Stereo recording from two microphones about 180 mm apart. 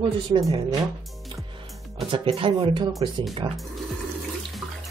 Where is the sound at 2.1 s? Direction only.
30° right (ahead or behind).